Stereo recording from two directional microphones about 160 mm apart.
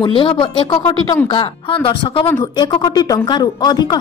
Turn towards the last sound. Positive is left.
turn(degrees=25)  # may be behind; listen again after turning